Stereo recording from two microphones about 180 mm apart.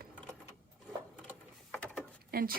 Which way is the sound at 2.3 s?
55° right (ahead or behind).